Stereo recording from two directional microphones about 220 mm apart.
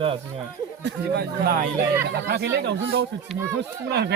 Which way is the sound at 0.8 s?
45° right (ahead or behind).